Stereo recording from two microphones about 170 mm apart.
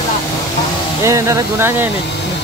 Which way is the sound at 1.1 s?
15° right (ahead or behind).